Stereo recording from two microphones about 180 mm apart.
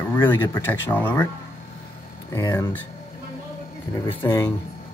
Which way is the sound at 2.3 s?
20° left (ahead or behind).